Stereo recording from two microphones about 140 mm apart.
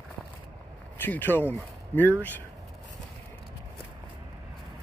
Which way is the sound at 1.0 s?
15° left (ahead or behind).